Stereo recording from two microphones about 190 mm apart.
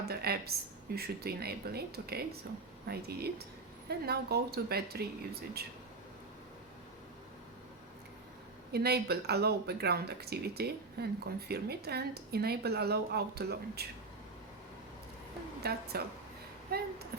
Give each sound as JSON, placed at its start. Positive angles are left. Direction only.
{"t": 0.0, "sound": "speech", "side_deg": -55}
{"t": 8.7, "sound": "speech", "side_deg": -55}
{"t": 15.6, "sound": "speech", "side_deg": -55}